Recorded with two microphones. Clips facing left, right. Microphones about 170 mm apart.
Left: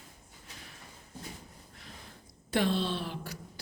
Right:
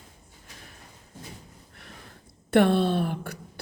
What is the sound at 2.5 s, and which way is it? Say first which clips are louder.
Speech: right 9 dB; 60° right (ahead or behind).